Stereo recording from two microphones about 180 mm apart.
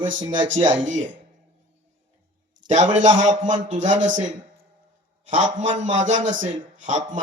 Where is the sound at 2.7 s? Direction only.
45° right (ahead or behind).